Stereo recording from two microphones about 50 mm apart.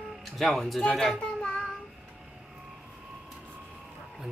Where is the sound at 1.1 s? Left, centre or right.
Left.